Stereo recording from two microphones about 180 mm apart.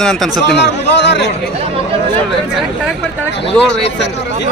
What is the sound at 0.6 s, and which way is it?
Speech, 75° left (ahead or behind).